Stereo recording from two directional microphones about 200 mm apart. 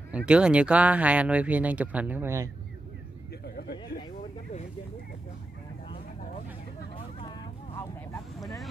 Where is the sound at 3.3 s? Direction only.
55° left (ahead or behind).